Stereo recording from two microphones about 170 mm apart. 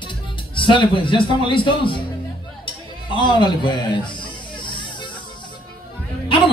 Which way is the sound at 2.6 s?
30° left (ahead or behind).